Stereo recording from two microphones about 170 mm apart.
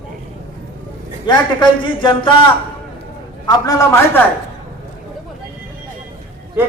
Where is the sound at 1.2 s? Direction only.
25° left (ahead or behind).